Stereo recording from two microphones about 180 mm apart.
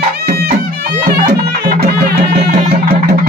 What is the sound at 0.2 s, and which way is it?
Music, 55° right (ahead or behind).